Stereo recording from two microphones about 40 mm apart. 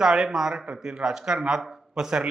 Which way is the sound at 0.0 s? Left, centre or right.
Centre.